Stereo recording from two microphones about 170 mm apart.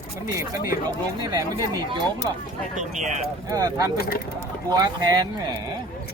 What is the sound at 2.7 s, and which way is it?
Speech, 45° right (ahead or behind).